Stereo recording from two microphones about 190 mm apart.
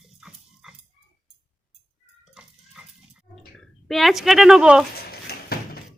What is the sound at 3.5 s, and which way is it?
Speech, centre (ahead or behind).